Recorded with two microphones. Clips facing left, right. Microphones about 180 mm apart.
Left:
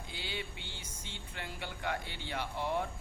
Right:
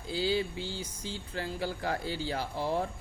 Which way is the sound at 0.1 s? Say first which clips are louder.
Right 14 dB; 35° right (ahead or behind).